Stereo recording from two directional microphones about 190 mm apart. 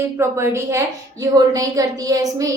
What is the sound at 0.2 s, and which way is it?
A woman's voice, 15° right (ahead or behind).